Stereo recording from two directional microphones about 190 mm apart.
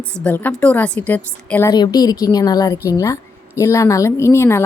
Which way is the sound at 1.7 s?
20° left (ahead or behind).